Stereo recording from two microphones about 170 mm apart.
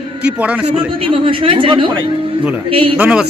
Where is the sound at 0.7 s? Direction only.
30° right (ahead or behind).